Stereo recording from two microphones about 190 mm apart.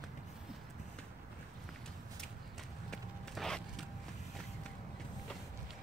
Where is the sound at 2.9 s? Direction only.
Centre (ahead or behind).